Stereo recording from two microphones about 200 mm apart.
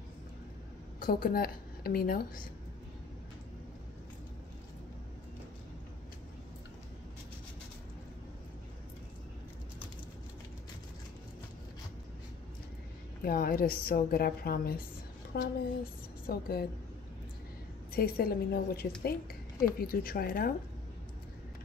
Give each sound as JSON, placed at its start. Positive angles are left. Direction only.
{"t": 0.9, "sound": "a woman's voice", "side_deg": 45}
{"t": 13.2, "sound": "a woman's voice", "side_deg": 50}
{"t": 17.9, "sound": "a woman's voice", "side_deg": 50}